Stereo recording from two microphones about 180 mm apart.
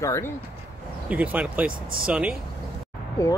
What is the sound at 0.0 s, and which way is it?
Speech, 15° left (ahead or behind).